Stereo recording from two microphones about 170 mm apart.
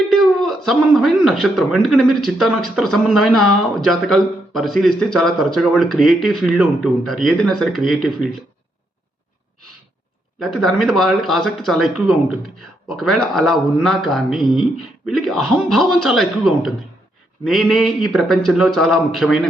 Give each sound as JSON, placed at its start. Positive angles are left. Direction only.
{"t": 0.1, "sound": "speech", "side_deg": 0}
{"t": 10.4, "sound": "speech", "side_deg": 0}